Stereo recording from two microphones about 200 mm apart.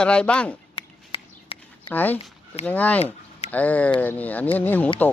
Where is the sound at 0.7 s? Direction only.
25° left (ahead or behind).